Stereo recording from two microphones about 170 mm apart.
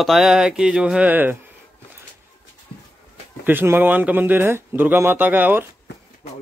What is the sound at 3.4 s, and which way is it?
Speech, 10° right (ahead or behind).